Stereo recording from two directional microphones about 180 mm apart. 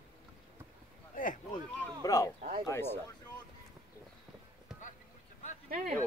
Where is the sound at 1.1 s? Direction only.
50° left (ahead or behind).